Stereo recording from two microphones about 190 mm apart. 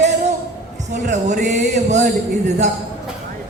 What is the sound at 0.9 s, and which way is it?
Speech, 40° right (ahead or behind).